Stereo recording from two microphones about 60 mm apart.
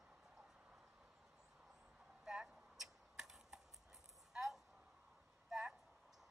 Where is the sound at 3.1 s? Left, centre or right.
Centre.